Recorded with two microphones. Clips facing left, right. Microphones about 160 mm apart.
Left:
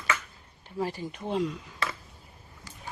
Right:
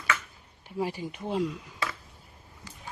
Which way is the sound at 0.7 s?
10° right (ahead or behind).